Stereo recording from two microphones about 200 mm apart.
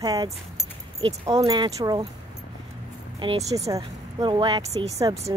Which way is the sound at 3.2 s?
20° right (ahead or behind).